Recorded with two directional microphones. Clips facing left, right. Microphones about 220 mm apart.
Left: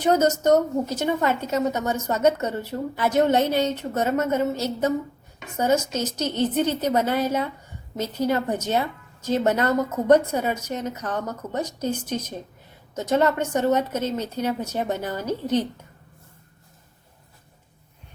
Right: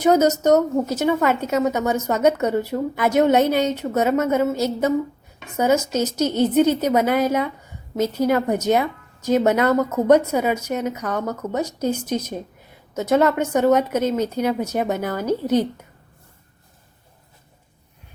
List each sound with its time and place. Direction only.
0.0 s a woman's voice: 10° right (ahead or behind)